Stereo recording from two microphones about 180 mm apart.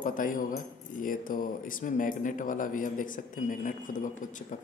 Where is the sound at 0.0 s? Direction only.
50° left (ahead or behind).